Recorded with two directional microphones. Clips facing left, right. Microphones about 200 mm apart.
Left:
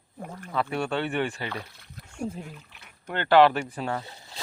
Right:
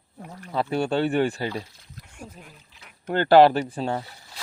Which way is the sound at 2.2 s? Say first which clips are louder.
Left 10 dB; 25° left (ahead or behind).